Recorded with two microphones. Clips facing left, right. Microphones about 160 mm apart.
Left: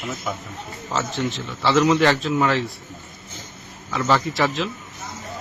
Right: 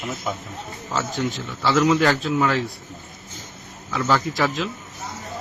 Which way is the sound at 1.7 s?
Centre (ahead or behind).